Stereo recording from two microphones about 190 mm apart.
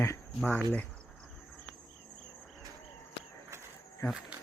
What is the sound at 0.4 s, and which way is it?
Speech, 10° left (ahead or behind).